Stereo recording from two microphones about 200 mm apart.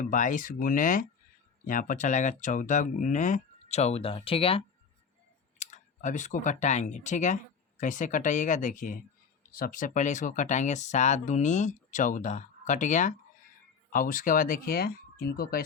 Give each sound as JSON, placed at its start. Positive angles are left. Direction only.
{"t": 0.0, "sound": "speech", "side_deg": 40}